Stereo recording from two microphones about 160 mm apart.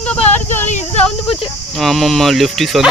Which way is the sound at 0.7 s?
45° left (ahead or behind).